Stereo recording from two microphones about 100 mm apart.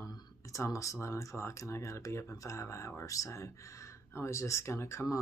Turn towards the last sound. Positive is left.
turn(degrees=30)  # may be behind; listen again after turning